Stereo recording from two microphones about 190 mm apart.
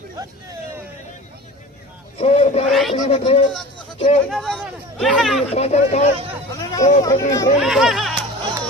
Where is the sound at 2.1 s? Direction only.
35° left (ahead or behind).